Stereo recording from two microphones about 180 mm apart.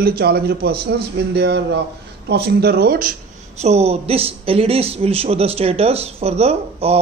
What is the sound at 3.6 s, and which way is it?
A man's voice, 35° right (ahead or behind).